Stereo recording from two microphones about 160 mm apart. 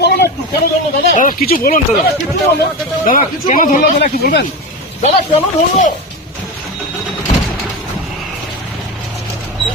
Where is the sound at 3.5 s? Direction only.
55° left (ahead or behind).